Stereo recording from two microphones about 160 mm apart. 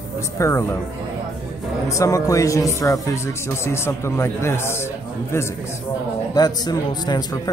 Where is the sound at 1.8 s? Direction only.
20° left (ahead or behind).